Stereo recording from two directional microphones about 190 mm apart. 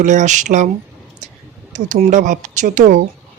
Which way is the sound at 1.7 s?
35° right (ahead or behind).